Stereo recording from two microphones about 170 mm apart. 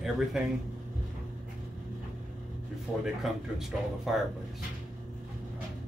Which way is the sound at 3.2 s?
Centre (ahead or behind).